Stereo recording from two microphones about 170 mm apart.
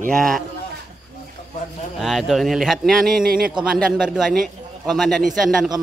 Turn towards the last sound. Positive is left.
turn(degrees=0)  # may be behind; listen again after turning